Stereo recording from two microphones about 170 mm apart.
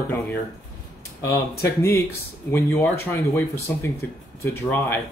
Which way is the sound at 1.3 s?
15° left (ahead or behind).